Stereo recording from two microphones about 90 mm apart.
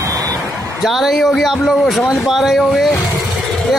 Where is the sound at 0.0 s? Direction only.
35° right (ahead or behind).